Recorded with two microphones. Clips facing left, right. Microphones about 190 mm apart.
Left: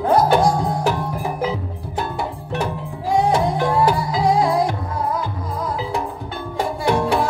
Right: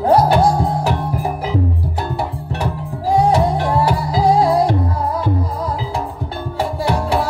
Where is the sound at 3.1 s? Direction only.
35° right (ahead or behind).